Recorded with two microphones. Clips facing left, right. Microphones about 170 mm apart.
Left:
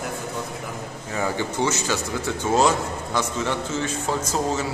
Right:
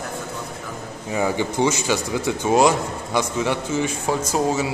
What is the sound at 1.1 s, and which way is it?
A man's voice, 15° right (ahead or behind).